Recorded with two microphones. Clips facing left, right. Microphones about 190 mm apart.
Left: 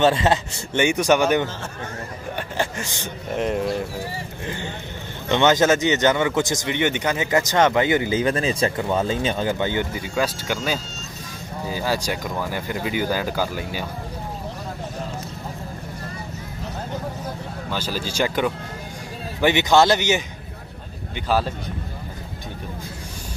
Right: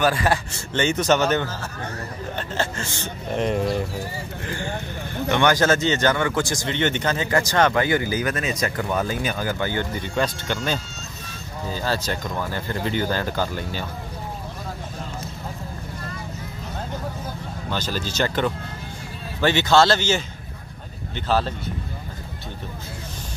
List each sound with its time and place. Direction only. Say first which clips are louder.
0.0 s speech: left 3 dB; 25° left (ahead or behind)
3.3 s speech: even; centre (ahead or behind)
4.5 s speech: right 3 dB; 20° left (ahead or behind)
9.9 s speech: even; 5° left (ahead or behind)
17.6 s speech: even; 10° left (ahead or behind)
21.3 s speech: even; 10° left (ahead or behind)